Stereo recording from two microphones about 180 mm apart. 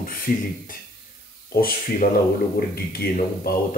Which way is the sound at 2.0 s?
50° left (ahead or behind).